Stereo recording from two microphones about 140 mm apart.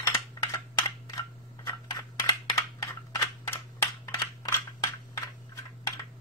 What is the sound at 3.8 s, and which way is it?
Crushing, 25° left (ahead or behind).